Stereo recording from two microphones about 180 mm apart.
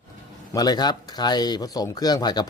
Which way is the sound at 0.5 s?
20° left (ahead or behind).